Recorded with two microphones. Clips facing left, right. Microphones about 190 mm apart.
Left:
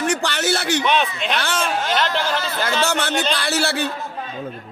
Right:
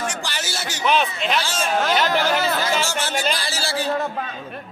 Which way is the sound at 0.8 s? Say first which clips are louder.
Even; centre (ahead or behind).